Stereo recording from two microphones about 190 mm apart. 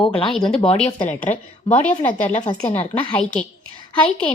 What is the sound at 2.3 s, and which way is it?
Speech, 35° left (ahead or behind).